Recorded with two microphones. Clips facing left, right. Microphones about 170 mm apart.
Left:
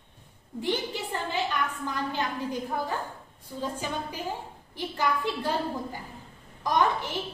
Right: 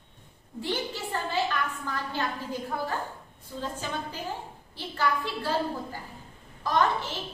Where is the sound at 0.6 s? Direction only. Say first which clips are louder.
Left 2 dB; 15° left (ahead or behind).